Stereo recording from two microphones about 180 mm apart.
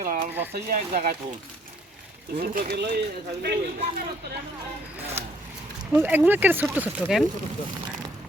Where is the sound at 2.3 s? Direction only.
50° right (ahead or behind).